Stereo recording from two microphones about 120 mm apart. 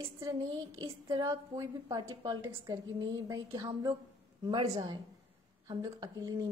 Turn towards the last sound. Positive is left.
turn(degrees=-30)  # may be behind; listen again after turning